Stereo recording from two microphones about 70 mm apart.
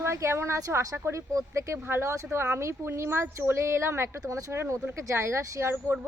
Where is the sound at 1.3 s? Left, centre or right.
Right.